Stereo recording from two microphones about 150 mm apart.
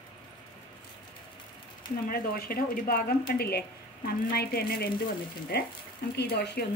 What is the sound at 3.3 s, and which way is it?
A woman's voice, 90° left.